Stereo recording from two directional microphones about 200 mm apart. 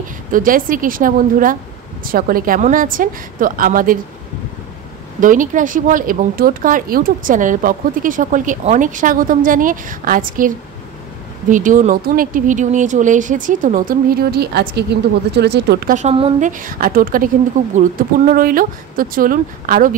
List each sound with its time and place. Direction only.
0.3 s speech: 45° right (ahead or behind)
5.2 s speech: 40° right (ahead or behind)
11.5 s speech: 40° right (ahead or behind); by 15.9 s 55° right (ahead or behind)
15.9 s speech: 35° right (ahead or behind)